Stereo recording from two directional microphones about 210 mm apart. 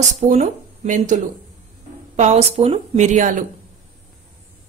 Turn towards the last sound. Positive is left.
turn(degrees=-35)  # may be behind; listen again after turning